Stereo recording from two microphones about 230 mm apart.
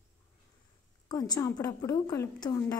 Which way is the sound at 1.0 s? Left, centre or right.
Centre.